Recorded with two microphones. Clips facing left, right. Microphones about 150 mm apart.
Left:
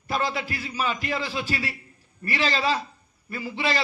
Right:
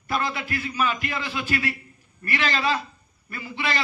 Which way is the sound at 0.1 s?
30° left (ahead or behind).